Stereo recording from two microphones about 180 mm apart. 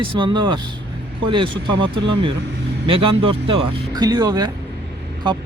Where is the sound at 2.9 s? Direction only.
30° right (ahead or behind).